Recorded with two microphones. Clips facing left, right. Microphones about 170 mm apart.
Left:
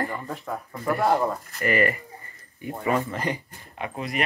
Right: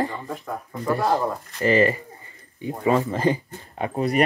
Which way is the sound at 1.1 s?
25° right (ahead or behind).